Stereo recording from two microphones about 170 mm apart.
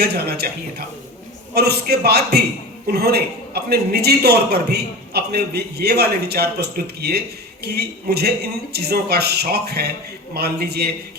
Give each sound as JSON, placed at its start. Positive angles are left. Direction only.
{"t": 0.0, "sound": "a man's voice", "side_deg": -70}
{"t": 1.5, "sound": "a man's voice", "side_deg": -70}